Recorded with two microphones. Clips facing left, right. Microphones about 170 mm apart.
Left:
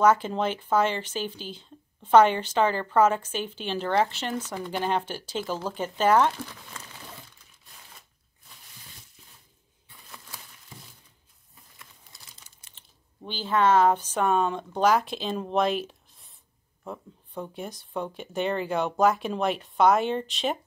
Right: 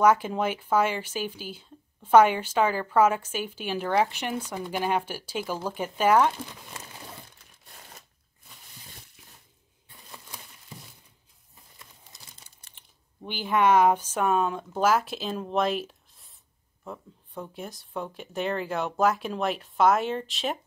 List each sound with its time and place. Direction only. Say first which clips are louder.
0.0 s speech: even; 10° right (ahead or behind)
10.0 s a sound: right 1 dB; 20° right (ahead or behind)
13.3 s speech: even; 15° right (ahead or behind)